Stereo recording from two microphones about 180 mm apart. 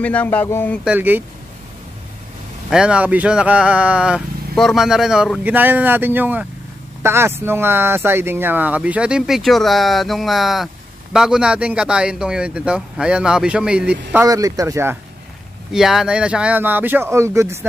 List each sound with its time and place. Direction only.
0.0 s speech: 10° left (ahead or behind)
0.8 s speech: 10° right (ahead or behind)
2.7 s speech: 5° right (ahead or behind)
14.2 s speech: 20° right (ahead or behind)
15.7 s speech: centre (ahead or behind)